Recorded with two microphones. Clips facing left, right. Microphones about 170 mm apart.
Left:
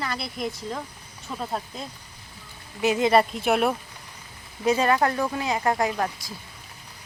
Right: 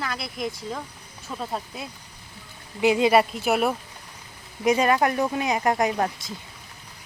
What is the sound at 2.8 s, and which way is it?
Speech, 15° right (ahead or behind).